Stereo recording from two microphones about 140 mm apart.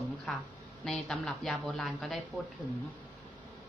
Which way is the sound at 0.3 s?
5° left (ahead or behind).